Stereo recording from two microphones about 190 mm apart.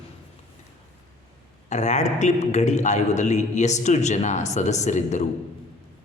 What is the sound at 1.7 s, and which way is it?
Speech, 40° left (ahead or behind).